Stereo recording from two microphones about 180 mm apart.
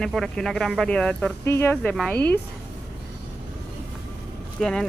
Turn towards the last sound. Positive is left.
turn(degrees=5)  # may be behind; listen again after turning